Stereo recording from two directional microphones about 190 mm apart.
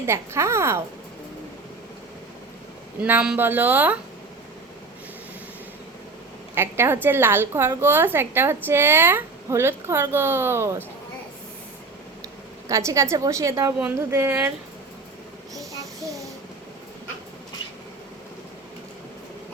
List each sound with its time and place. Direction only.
0.0 s a woman's voice: 15° right (ahead or behind)
3.0 s a woman's voice: 5° right (ahead or behind)
6.5 s a woman's voice: 10° right (ahead or behind)
12.6 s a woman's voice: 15° right (ahead or behind)
15.5 s child singing: 15° right (ahead or behind)